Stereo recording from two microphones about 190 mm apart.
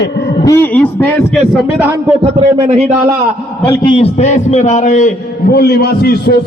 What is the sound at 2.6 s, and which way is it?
Speech, 35° right (ahead or behind).